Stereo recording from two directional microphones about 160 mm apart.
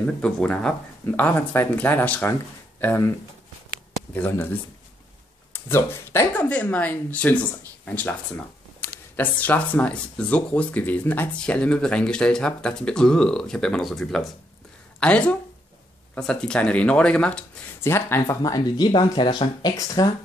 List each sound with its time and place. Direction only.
0.0 s speech: 5° left (ahead or behind)
4.1 s speech: 10° left (ahead or behind)
9.1 s speech: 10° left (ahead or behind)